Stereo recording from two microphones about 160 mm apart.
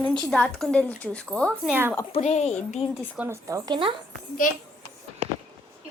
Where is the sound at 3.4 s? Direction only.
20° right (ahead or behind).